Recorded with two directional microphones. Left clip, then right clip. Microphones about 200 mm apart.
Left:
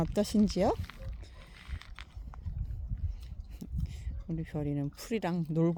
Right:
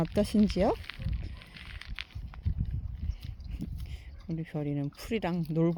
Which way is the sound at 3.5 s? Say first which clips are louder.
Right 2 dB; centre (ahead or behind).